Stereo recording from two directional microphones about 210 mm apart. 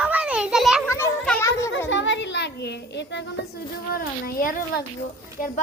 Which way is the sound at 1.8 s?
60° left (ahead or behind).